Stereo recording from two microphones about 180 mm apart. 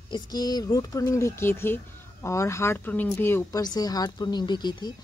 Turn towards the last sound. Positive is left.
turn(degrees=25)  # may be behind; listen again after turning